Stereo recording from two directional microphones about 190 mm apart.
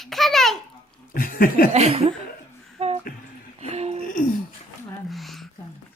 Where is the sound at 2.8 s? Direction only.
35° right (ahead or behind).